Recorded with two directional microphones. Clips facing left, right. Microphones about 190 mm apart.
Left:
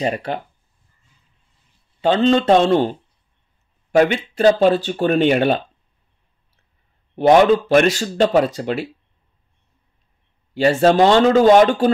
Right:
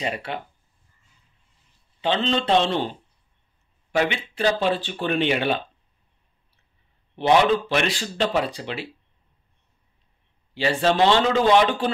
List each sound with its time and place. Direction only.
0.0 s speech: 40° left (ahead or behind)
2.0 s speech: 45° left (ahead or behind)
7.2 s speech: 45° left (ahead or behind)
10.5 s speech: 45° left (ahead or behind)